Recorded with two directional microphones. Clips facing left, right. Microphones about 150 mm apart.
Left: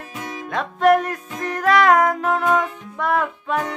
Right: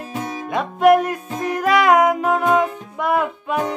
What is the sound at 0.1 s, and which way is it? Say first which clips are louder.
Music: right 5 dB; 35° right (ahead or behind).